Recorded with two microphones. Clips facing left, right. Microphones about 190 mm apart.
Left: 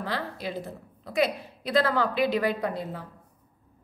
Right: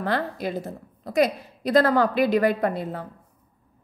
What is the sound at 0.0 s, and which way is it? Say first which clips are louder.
A woman's voice: right 6 dB; 50° right (ahead or behind).